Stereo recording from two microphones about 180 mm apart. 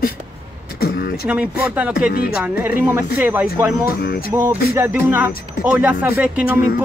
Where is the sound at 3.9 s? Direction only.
60° left (ahead or behind).